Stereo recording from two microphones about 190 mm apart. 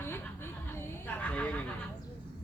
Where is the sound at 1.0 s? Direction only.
5° left (ahead or behind).